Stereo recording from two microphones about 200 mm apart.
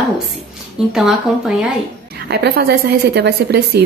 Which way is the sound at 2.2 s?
55° right (ahead or behind).